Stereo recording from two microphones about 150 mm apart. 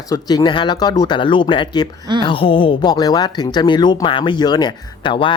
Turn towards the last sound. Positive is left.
turn(degrees=35)  # may be behind; listen again after turning